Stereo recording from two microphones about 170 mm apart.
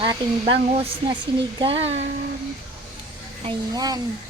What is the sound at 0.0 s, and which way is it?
Speech, 30° right (ahead or behind).